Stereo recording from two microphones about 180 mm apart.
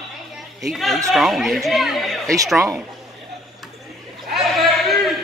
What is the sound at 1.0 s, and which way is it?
Speech, centre (ahead or behind).